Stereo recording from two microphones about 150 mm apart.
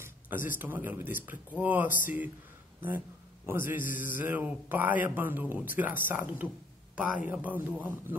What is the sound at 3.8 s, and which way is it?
Music, 60° left (ahead or behind).